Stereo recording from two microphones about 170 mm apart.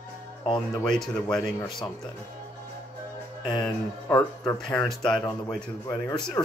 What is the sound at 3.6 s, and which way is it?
Speech, 5° left (ahead or behind).